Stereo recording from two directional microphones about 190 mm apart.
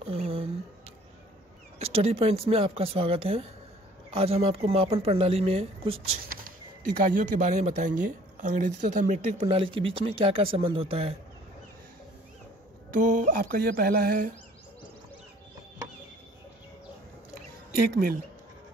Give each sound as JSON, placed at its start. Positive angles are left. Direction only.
{"t": 0.0, "sound": "a sound", "side_deg": -30}
{"t": 1.8, "sound": "speech", "side_deg": -30}
{"t": 7.0, "sound": "speech", "side_deg": -45}
{"t": 12.9, "sound": "mantra", "side_deg": -45}
{"t": 17.7, "sound": "mantra", "side_deg": -55}